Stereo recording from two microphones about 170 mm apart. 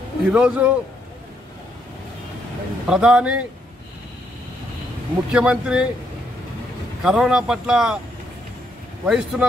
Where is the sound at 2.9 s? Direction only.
5° right (ahead or behind).